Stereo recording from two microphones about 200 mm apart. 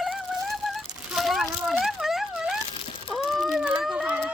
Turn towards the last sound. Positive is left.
turn(degrees=-5)  # may be behind; listen again after turning